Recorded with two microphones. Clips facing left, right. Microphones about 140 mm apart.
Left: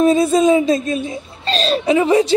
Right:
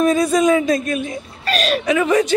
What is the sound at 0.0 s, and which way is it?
Speech, 25° left (ahead or behind).